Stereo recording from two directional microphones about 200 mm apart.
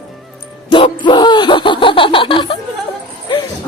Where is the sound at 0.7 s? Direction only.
25° left (ahead or behind).